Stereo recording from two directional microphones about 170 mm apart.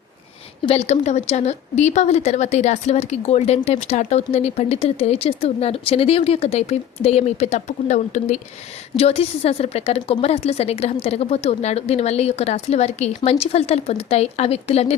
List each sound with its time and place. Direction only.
0.6 s speech: 35° left (ahead or behind)